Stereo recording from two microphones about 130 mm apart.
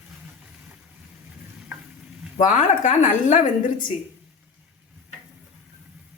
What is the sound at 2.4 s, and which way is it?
Speech, 75° left (ahead or behind).